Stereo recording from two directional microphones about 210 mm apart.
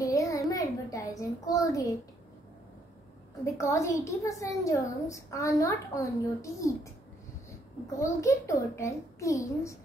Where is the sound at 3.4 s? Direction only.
15° left (ahead or behind).